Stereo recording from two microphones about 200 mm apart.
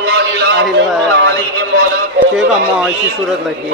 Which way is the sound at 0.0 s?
55° right (ahead or behind).